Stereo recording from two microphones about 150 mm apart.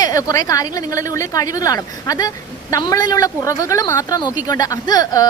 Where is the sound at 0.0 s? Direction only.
25° left (ahead or behind).